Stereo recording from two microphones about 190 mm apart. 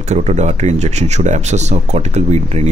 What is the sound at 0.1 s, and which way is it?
A man's voice, 35° right (ahead or behind).